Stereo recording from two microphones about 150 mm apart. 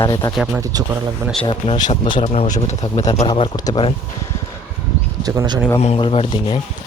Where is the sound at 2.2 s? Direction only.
50° left (ahead or behind); by 3.8 s 30° left (ahead or behind).